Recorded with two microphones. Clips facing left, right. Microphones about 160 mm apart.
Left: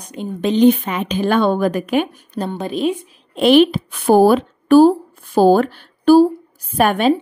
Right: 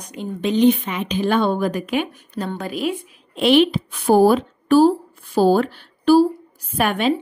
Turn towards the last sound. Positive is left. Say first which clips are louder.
# left 4 dB
turn(degrees=45)  # may be behind; listen again after turning